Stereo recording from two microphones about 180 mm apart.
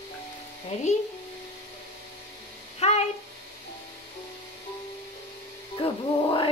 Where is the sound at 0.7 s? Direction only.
40° left (ahead or behind).